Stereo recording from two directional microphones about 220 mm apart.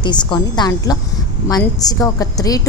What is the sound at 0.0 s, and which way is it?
A woman's voice, 20° left (ahead or behind).